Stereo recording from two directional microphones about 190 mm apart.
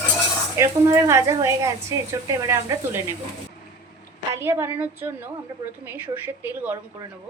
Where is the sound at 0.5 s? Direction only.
15° right (ahead or behind).